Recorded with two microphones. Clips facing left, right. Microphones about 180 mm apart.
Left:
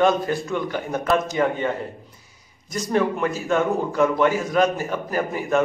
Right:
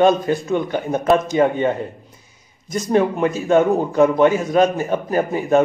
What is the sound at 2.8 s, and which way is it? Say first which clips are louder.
A man's voice: right 4 dB; 20° right (ahead or behind).